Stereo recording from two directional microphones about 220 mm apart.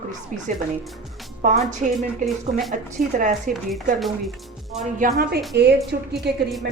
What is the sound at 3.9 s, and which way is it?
Speech, centre (ahead or behind).